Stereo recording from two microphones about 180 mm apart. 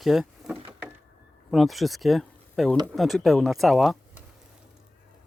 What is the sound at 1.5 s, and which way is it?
Speech, centre (ahead or behind).